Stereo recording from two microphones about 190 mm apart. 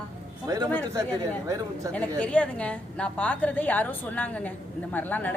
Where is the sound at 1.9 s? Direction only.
5° left (ahead or behind).